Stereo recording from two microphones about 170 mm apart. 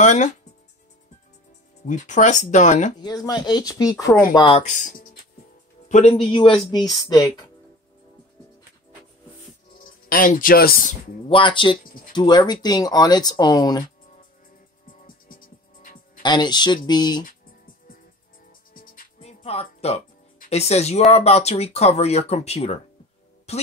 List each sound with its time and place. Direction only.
0.0 s speech: 45° left (ahead or behind)
1.9 s speech: 45° left (ahead or behind)
3.0 s speech: 25° left (ahead or behind)
4.6 s a man's voice: 50° left (ahead or behind)
6.3 s speech: 30° left (ahead or behind)
9.8 s speech: 55° left (ahead or behind)
11.2 s speech: 30° left (ahead or behind)
14.9 s music: 55° left (ahead or behind)
16.2 s speech: 25° left (ahead or behind)
18.7 s music: 55° left (ahead or behind)
19.2 s music: 35° left (ahead or behind)
20.4 s speech: 40° left (ahead or behind)